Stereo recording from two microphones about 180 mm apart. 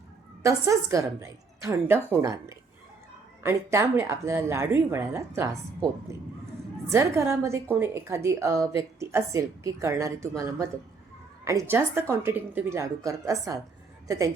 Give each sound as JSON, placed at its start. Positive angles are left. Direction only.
{"t": 0.4, "sound": "a woman's voice", "side_deg": -15}
{"t": 6.9, "sound": "a woman's voice", "side_deg": -15}